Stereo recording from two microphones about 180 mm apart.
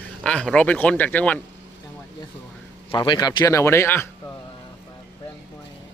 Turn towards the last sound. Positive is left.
turn(degrees=15)  # may be behind; listen again after turning